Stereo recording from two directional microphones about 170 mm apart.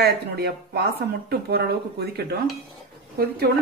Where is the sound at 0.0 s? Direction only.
70° right (ahead or behind).